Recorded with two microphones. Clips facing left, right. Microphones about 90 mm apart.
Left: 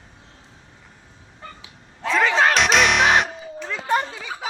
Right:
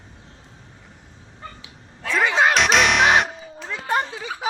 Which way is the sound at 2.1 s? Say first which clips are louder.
Even; 10° right (ahead or behind).